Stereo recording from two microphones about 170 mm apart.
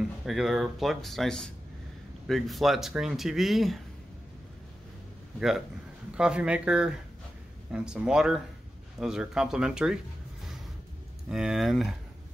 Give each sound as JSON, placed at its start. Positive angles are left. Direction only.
{"t": 0.2, "sound": "speech", "side_deg": 0}
{"t": 6.1, "sound": "speech", "side_deg": -5}
{"t": 11.2, "sound": "speech", "side_deg": -5}